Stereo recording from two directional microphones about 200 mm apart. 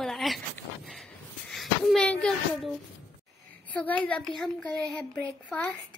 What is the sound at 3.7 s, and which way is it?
A woman's voice, 10° left (ahead or behind).